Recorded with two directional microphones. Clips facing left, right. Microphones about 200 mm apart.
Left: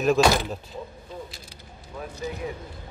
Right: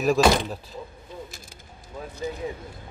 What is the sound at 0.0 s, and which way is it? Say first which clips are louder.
Speech: even; centre (ahead or behind).